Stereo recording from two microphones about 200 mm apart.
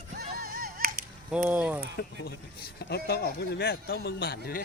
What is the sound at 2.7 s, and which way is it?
Speech, 55° left (ahead or behind).